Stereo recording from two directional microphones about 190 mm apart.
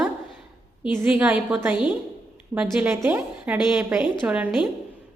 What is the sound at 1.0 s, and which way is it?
A woman's voice, 5° right (ahead or behind).